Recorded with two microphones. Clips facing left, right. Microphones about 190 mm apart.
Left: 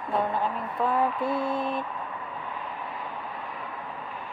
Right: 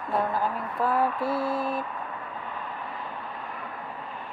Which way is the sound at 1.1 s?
20° left (ahead or behind).